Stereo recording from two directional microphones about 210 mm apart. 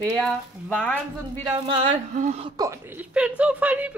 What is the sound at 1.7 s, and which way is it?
Speech, 30° right (ahead or behind).